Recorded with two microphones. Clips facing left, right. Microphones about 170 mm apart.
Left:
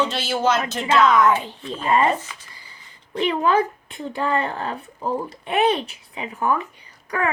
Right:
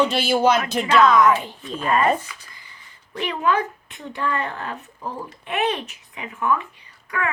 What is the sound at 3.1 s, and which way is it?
Speech, 30° left (ahead or behind).